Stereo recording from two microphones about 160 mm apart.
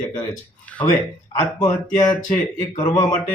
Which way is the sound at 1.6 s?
25° left (ahead or behind).